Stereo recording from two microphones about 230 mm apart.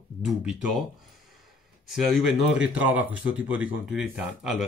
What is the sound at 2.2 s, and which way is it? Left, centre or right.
Speech, centre.